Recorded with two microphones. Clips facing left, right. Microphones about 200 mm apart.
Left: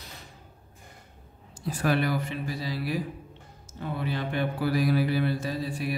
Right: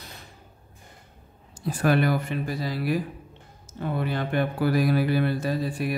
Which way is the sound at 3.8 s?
55° right (ahead or behind).